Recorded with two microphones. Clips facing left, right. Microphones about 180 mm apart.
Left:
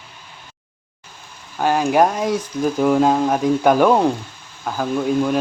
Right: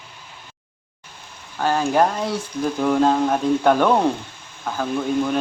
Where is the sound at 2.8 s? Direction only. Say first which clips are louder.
Left 2 dB; 10° left (ahead or behind).